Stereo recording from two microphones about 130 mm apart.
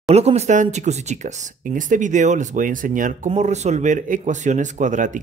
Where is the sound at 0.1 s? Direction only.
55° right (ahead or behind); by 3.3 s 90° right.